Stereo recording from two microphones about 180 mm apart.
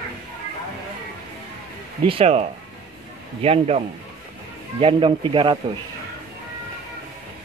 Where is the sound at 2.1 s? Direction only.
35° right (ahead or behind).